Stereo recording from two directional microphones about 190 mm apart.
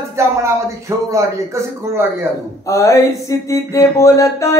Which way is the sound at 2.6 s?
15° left (ahead or behind).